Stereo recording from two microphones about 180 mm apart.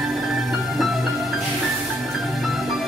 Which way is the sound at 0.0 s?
Centre (ahead or behind).